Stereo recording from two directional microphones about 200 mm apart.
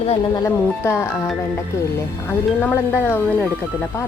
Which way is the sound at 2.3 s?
10° left (ahead or behind).